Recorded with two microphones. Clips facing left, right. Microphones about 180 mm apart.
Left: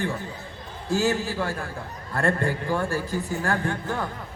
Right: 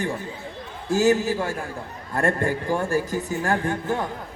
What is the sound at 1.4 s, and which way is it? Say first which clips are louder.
Speech: right 1 dB; 15° right (ahead or behind).